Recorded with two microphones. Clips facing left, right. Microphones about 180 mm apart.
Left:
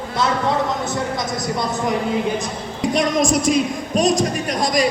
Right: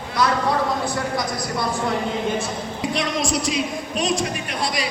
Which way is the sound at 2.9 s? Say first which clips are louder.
Left 7 dB; 45° left (ahead or behind).